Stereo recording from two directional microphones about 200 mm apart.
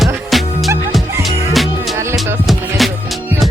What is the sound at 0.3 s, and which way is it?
Music, centre (ahead or behind).